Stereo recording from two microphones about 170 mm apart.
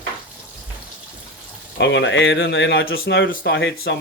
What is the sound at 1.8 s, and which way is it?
Speech, 90° left.